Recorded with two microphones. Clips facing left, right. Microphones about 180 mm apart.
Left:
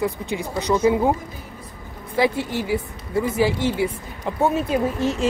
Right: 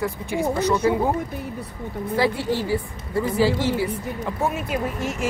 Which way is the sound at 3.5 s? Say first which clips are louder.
Even; 20° left (ahead or behind).